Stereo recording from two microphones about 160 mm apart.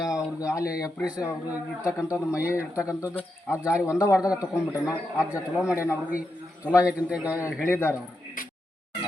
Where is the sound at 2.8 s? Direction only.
20° left (ahead or behind).